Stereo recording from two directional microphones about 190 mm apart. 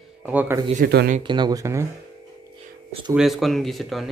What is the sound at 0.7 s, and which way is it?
Speech, 55° right (ahead or behind).